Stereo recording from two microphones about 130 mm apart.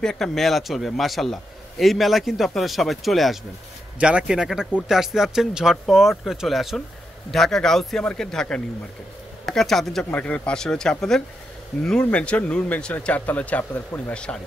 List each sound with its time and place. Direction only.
0.0 s a man's voice: 5° left (ahead or behind)